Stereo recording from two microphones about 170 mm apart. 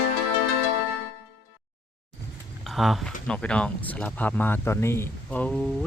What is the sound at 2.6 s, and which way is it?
Speech, centre (ahead or behind).